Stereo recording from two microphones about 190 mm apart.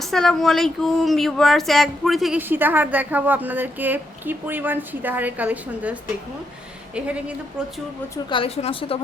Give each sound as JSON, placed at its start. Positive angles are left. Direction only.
{"t": 0.0, "sound": "speech", "side_deg": 0}
{"t": 8.1, "sound": "a woman's voice", "side_deg": 25}